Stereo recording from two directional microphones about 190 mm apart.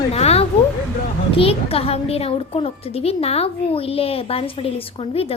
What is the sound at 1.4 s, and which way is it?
Child singing, 30° left (ahead or behind).